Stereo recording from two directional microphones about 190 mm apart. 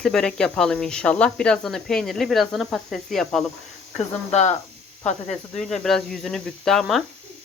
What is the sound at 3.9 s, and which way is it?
Speech, 35° left (ahead or behind).